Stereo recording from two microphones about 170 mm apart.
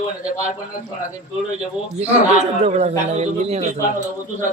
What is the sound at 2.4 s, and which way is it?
A man's voice, 40° right (ahead or behind).